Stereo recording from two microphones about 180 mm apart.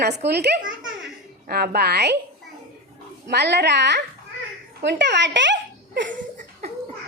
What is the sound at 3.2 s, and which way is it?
A woman's voice, 70° right (ahead or behind).